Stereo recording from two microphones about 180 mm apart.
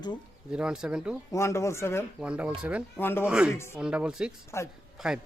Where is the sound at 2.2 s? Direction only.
5° right (ahead or behind).